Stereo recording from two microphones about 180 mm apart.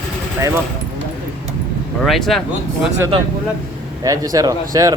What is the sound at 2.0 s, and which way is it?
Speech, centre (ahead or behind).